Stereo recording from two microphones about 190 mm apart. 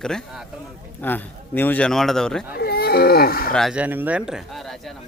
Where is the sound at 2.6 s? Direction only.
55° left (ahead or behind).